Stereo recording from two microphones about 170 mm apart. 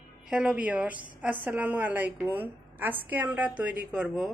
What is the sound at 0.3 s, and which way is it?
A woman's voice, 5° right (ahead or behind).